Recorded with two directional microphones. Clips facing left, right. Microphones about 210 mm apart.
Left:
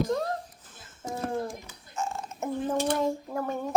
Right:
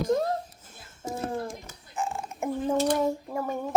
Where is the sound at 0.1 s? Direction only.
15° right (ahead or behind).